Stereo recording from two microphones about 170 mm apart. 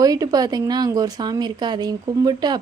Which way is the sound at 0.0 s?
20° right (ahead or behind).